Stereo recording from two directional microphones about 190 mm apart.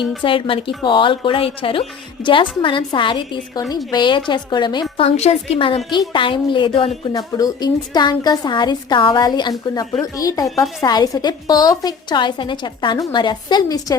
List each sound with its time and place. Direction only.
0.2 s a woman's voice: 25° left (ahead or behind)
7.1 s a woman's voice: 20° left (ahead or behind)